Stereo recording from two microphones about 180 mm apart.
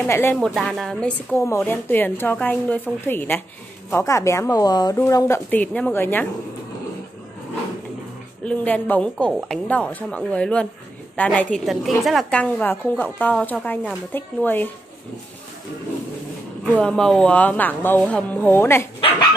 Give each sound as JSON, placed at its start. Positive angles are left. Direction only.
{"t": 0.0, "sound": "a woman's voice", "side_deg": 10}
{"t": 8.5, "sound": "a woman's voice", "side_deg": 10}
{"t": 16.6, "sound": "a woman's voice", "side_deg": 5}